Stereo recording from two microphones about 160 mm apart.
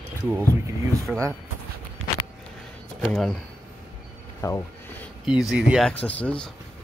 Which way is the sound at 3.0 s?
Centre (ahead or behind).